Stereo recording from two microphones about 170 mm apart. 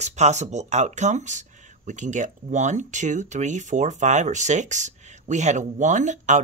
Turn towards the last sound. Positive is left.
turn(degrees=-45)  # may be behind; listen again after turning